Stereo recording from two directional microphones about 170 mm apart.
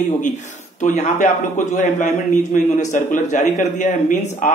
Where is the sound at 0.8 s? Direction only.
45° left (ahead or behind).